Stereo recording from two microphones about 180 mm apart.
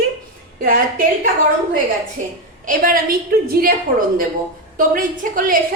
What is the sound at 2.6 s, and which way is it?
A woman's voice, 50° right (ahead or behind).